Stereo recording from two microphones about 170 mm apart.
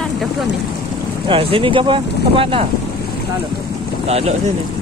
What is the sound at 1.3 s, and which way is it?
Speech, 30° right (ahead or behind).